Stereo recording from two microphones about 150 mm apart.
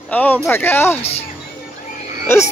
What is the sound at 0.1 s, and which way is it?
Speech, 10° left (ahead or behind).